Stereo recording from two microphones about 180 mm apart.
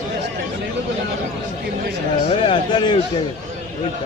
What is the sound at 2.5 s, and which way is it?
Speech, 25° left (ahead or behind).